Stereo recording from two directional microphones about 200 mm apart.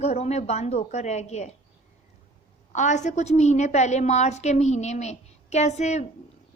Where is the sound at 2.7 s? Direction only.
35° left (ahead or behind).